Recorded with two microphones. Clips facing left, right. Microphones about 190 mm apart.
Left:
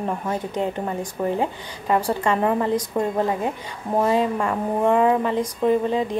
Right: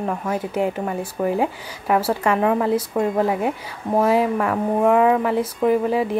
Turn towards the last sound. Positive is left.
turn(degrees=-10)  # may be behind; listen again after turning